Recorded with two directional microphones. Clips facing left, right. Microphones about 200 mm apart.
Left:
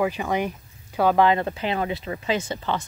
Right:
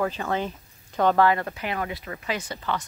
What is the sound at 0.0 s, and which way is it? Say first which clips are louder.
Speech: left 3 dB; 15° left (ahead or behind).